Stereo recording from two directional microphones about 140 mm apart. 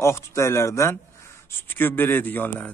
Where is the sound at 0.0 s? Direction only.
20° left (ahead or behind).